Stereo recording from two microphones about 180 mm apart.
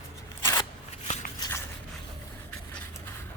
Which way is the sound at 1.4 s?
15° left (ahead or behind).